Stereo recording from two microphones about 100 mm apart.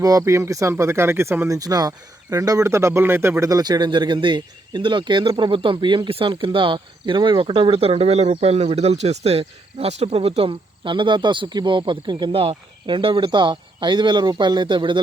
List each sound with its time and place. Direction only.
0.0 s speech: 30° right (ahead or behind)
3.6 s speech: 45° right (ahead or behind)
5.2 s speech: 40° right (ahead or behind)
5.5 s speech: 55° right (ahead or behind)